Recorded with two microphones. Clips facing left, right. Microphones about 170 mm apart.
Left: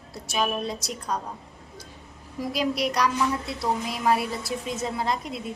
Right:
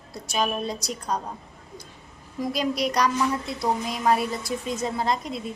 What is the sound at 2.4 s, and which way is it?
A woman's voice, 5° left (ahead or behind).